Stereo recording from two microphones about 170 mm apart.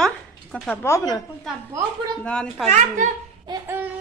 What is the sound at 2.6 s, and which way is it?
Speech, 45° right (ahead or behind).